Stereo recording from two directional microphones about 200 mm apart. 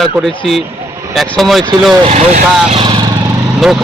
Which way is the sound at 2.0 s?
35° right (ahead or behind).